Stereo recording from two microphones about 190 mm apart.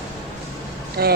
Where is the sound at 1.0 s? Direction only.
55° right (ahead or behind).